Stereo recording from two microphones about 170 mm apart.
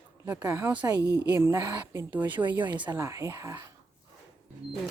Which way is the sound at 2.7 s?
25° right (ahead or behind).